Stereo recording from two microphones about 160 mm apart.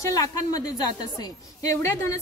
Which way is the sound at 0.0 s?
20° left (ahead or behind).